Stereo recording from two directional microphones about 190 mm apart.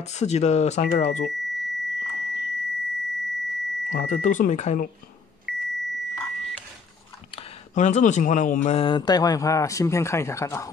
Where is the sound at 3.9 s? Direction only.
40° left (ahead or behind).